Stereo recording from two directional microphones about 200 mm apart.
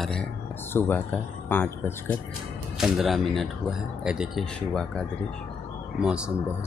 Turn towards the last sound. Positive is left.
turn(degrees=-5)  # may be behind; listen again after turning